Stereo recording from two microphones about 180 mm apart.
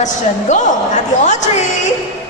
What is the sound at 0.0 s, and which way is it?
A man's voice, 40° left (ahead or behind).